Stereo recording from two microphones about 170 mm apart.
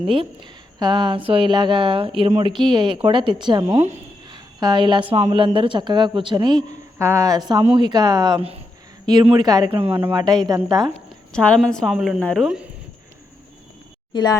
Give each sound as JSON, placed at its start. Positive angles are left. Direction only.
{"t": 0.8, "sound": "a man's voice", "side_deg": -30}
{"t": 3.7, "sound": "speech", "side_deg": -40}
{"t": 4.3, "sound": "a sound", "side_deg": -25}
{"t": 5.1, "sound": "a man's voice", "side_deg": -30}
{"t": 9.1, "sound": "a man's voice", "side_deg": -25}
{"t": 11.3, "sound": "a woman's voice", "side_deg": 5}
{"t": 14.1, "sound": "speech", "side_deg": 25}